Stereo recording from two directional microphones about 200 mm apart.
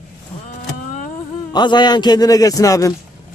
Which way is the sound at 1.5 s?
20° left (ahead or behind).